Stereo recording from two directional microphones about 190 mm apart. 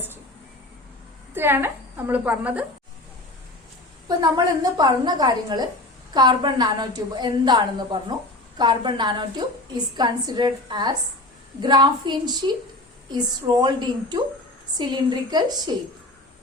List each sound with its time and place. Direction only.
1.3 s a woman's voice: 10° right (ahead or behind)
4.8 s a woman's voice: 20° right (ahead or behind)